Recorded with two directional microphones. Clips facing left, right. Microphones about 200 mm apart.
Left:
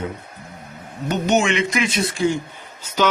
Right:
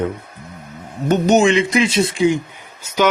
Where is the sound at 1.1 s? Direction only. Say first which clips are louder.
Right 6 dB; 40° right (ahead or behind).